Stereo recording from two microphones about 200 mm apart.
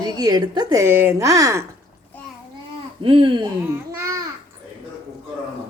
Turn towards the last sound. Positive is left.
turn(degrees=-15)  # may be behind; listen again after turning